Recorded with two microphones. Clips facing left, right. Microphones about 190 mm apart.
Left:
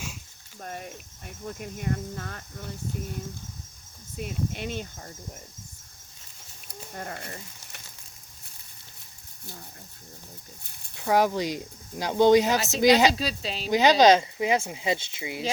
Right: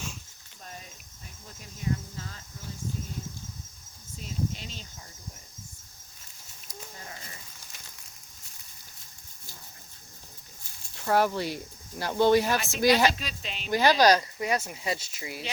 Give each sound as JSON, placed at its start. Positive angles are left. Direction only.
{"t": 0.6, "sound": "cricket", "side_deg": 60}
{"t": 1.5, "sound": "speech", "side_deg": 60}
{"t": 4.2, "sound": "speech", "side_deg": 60}
{"t": 6.7, "sound": "speech", "side_deg": 60}
{"t": 10.9, "sound": "speech", "side_deg": 15}
{"t": 13.1, "sound": "speech", "side_deg": 35}
{"t": 13.7, "sound": "speech", "side_deg": 20}